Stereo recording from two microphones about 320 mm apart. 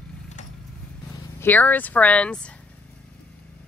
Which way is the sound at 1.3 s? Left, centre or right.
Centre.